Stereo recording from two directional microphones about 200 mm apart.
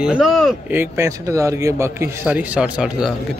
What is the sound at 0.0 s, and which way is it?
Speech, 5° right (ahead or behind).